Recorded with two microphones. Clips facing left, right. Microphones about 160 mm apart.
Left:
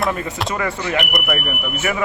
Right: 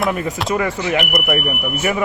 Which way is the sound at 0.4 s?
Centre (ahead or behind).